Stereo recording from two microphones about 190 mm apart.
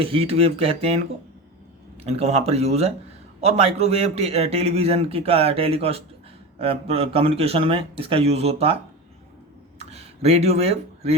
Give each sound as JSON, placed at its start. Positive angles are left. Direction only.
{"t": 0.0, "sound": "a man's voice", "side_deg": -30}
{"t": 2.0, "sound": "a man's voice", "side_deg": -35}
{"t": 9.7, "sound": "a sound", "side_deg": -35}